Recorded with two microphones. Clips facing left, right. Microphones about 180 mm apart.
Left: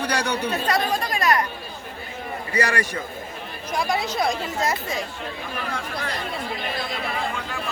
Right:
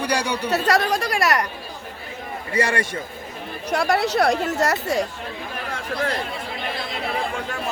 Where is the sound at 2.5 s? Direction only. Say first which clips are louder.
Right 2 dB; 25° right (ahead or behind).